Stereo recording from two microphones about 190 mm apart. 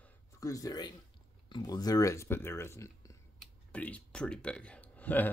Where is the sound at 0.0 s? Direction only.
15° left (ahead or behind).